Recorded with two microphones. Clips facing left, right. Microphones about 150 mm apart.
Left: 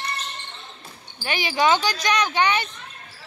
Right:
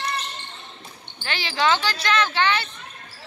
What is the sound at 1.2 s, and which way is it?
Speech, 15° left (ahead or behind).